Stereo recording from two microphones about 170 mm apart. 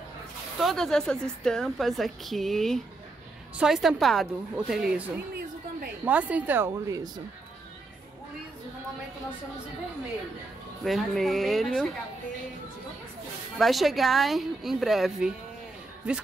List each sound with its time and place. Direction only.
0.6 s a woman's voice: centre (ahead or behind); by 7.1 s 15° right (ahead or behind)
10.8 s a woman's voice: centre (ahead or behind)
13.6 s a woman's voice: centre (ahead or behind)